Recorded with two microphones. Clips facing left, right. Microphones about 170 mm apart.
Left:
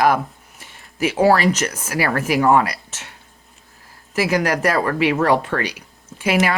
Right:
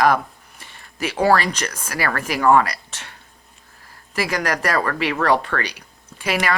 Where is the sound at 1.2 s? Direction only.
5° left (ahead or behind).